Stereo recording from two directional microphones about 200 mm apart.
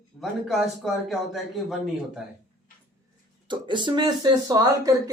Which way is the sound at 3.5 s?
25° right (ahead or behind).